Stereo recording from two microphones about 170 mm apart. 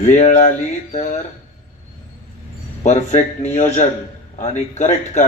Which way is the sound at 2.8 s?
45° left (ahead or behind).